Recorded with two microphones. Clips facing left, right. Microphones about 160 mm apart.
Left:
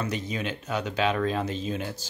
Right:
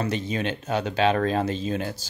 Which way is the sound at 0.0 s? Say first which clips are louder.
Right 4 dB; 30° right (ahead or behind).